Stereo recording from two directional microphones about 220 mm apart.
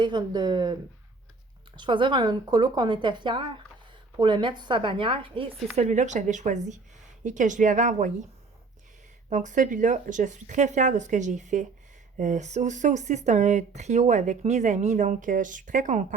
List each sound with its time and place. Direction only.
0.0 s speech: 20° right (ahead or behind)
9.3 s speech: 35° right (ahead or behind)